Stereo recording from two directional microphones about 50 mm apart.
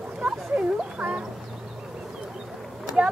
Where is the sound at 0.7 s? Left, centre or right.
Right.